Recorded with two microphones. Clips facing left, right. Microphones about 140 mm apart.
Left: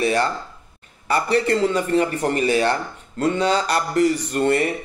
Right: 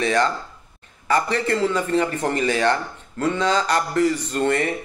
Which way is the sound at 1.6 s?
15° left (ahead or behind).